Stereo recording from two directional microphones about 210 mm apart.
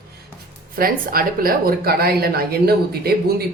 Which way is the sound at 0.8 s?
45° right (ahead or behind).